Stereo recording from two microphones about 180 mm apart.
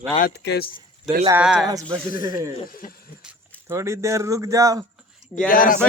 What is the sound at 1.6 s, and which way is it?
Speech, 20° right (ahead or behind).